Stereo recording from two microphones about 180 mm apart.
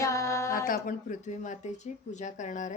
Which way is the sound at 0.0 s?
15° left (ahead or behind).